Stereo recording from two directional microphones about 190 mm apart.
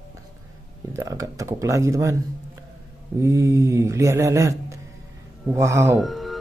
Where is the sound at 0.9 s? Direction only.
15° right (ahead or behind).